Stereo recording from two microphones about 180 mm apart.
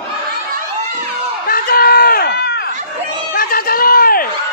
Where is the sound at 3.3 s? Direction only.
55° left (ahead or behind).